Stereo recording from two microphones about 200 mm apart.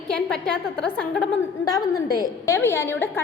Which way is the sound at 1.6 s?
15° left (ahead or behind).